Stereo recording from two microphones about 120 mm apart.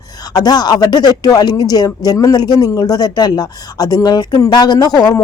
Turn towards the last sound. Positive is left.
turn(degrees=35)  # may be behind; listen again after turning